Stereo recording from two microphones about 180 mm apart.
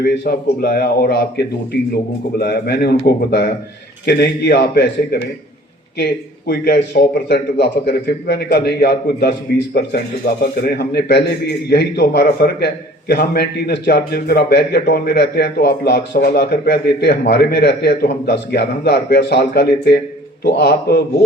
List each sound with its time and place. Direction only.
0.0 s a man's voice: 60° left (ahead or behind)
6.5 s a man's voice: 60° left (ahead or behind)